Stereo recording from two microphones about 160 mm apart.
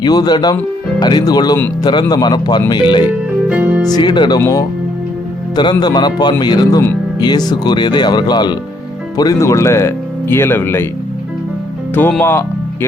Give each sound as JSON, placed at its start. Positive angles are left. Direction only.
{"t": 0.0, "sound": "speech", "side_deg": 25}
{"t": 3.5, "sound": "speech", "side_deg": -10}
{"t": 3.9, "sound": "speech", "side_deg": 30}
{"t": 12.2, "sound": "speech", "side_deg": 15}